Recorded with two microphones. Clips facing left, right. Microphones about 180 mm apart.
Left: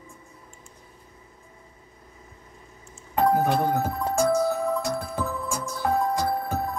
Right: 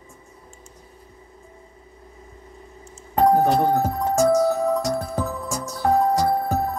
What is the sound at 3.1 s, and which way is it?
Speech, 40° right (ahead or behind).